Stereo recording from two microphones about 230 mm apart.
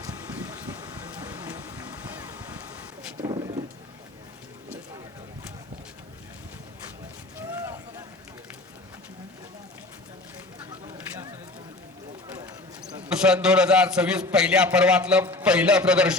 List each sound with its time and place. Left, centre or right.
2.0 s boat: centre
3.2 s speech: centre
7.3 s boat: centre
13.0 s a man's voice: centre